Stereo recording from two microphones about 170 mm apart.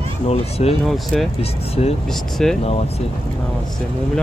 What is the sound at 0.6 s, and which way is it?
Speech, 40° left (ahead or behind).